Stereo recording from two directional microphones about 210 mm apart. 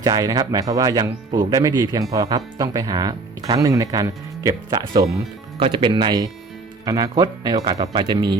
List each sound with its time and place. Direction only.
0.0 s speech: 20° right (ahead or behind)